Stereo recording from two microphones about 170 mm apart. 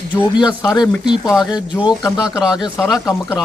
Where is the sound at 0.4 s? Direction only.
25° left (ahead or behind).